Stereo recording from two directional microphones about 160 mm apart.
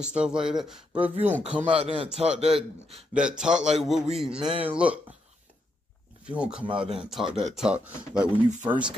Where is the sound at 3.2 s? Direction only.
5° right (ahead or behind).